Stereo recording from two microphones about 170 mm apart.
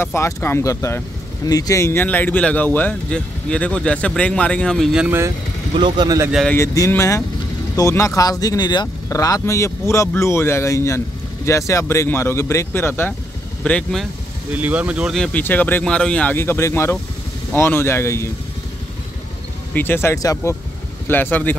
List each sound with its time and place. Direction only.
0.0 s speech: 15° left (ahead or behind)
5.0 s speech: 15° right (ahead or behind)
5.8 s speech: 25° right (ahead or behind)
6.5 s speech: 15° left (ahead or behind)
14.5 s speech: 10° right (ahead or behind); by 18.3 s 15° left (ahead or behind)
19.7 s speech: 10° left (ahead or behind)